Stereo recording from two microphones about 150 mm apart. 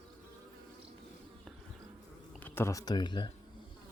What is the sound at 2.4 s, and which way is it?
Speech, 15° left (ahead or behind).